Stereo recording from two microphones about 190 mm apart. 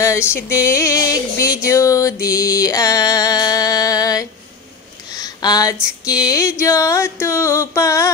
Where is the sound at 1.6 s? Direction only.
15° left (ahead or behind).